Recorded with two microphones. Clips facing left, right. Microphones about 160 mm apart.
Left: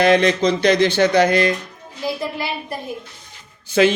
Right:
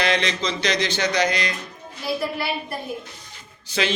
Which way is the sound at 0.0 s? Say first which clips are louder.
Left 9 dB; 50° left (ahead or behind).